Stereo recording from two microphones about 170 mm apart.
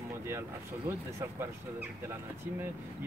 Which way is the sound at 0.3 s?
15° right (ahead or behind).